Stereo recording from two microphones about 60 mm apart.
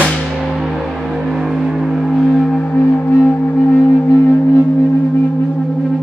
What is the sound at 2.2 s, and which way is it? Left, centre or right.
Gong, centre.